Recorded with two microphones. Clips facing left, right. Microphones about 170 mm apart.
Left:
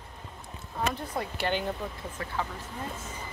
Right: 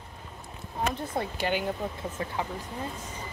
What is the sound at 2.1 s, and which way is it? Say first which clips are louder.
Speech: right 2 dB; 25° right (ahead or behind).